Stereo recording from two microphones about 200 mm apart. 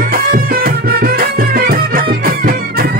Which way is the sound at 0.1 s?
50° right (ahead or behind).